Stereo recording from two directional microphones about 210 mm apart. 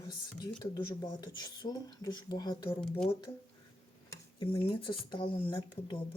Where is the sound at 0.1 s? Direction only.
20° left (ahead or behind).